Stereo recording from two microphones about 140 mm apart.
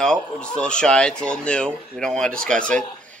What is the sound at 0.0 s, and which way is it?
A man's voice, 5° left (ahead or behind).